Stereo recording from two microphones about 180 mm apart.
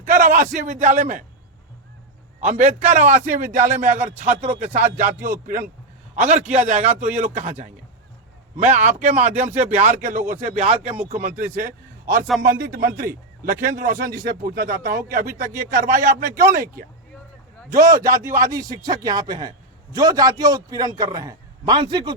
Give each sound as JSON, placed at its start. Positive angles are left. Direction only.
{"t": 0.0, "sound": "a man's voice", "side_deg": -45}
{"t": 2.4, "sound": "a man's voice", "side_deg": -40}
{"t": 5.1, "sound": "speech", "side_deg": -15}
{"t": 6.1, "sound": "a man's voice", "side_deg": -40}
{"t": 11.1, "sound": "speech", "side_deg": -50}
{"t": 12.6, "sound": "speech", "side_deg": -60}
{"t": 14.3, "sound": "speech", "side_deg": -60}
{"t": 16.0, "sound": "speech", "side_deg": -15}
{"t": 17.7, "sound": "speech", "side_deg": -15}